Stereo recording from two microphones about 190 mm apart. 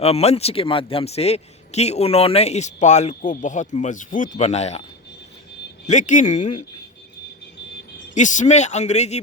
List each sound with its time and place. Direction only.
0.0 s a man's voice: 35° left (ahead or behind)
5.9 s a man's voice: 40° left (ahead or behind)
8.1 s a man's voice: 40° left (ahead or behind)